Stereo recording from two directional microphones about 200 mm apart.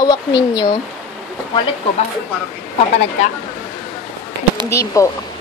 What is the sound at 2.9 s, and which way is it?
Speech, 30° left (ahead or behind).